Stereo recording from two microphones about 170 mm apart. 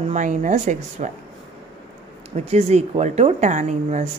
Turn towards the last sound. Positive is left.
turn(degrees=-45)  # may be behind; listen again after turning